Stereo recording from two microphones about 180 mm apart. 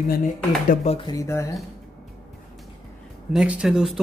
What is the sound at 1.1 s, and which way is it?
Speech, 15° left (ahead or behind).